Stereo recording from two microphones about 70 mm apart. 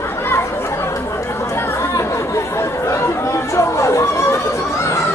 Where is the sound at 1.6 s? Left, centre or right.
Left.